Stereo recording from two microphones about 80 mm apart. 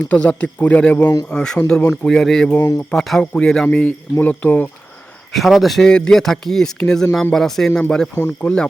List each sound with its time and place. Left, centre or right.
0.1 s a man's voice: centre
2.6 s speech: left
2.9 s a man's voice: centre; by 4.7 s left
5.3 s a man's voice: centre
8.1 s speech: left